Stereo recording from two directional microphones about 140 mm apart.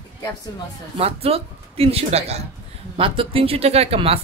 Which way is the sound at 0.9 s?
45° right (ahead or behind).